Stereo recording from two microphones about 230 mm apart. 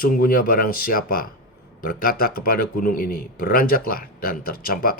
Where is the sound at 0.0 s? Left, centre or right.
Left.